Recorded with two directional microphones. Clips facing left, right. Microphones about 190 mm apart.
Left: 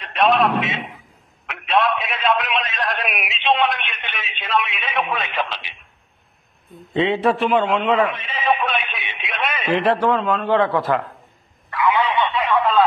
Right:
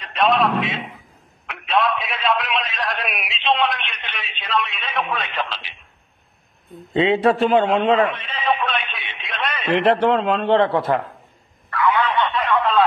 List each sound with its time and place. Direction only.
0.0 s a man's voice: centre (ahead or behind)
7.4 s a man's voice: 35° right (ahead or behind)
8.1 s radio: 5° left (ahead or behind)
9.8 s a man's voice: 25° right (ahead or behind)
11.7 s telephone: 15° left (ahead or behind)
12.1 s a sound: centre (ahead or behind)